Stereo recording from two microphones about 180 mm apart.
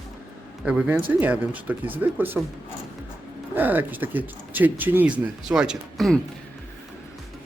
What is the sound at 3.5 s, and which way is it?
Speech, 10° right (ahead or behind).